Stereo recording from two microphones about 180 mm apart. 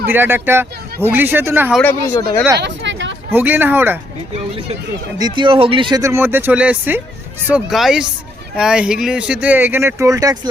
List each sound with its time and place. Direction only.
0.0 s speech: 10° right (ahead or behind)
1.8 s speech: 10° left (ahead or behind)
2.6 s a sound: 80° right
3.3 s speech: 10° right (ahead or behind)
5.1 s speech: 25° right (ahead or behind)